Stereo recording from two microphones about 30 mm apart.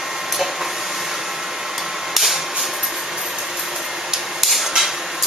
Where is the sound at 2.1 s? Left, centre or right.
Centre.